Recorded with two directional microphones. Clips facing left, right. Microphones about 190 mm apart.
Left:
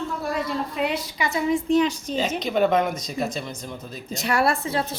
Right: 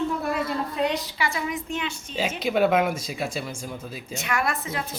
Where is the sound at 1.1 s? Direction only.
20° left (ahead or behind).